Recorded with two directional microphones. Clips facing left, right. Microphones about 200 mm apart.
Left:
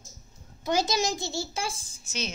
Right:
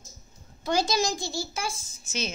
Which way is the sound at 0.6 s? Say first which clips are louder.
Right 1 dB; 20° left (ahead or behind).